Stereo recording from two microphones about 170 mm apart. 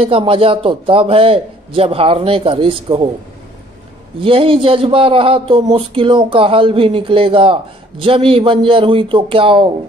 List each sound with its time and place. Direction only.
0.0 s a man's voice: 30° right (ahead or behind)
4.2 s a man's voice: 30° right (ahead or behind)